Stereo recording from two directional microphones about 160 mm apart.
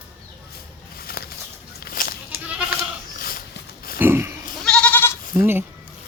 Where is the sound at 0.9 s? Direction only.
70° left (ahead or behind).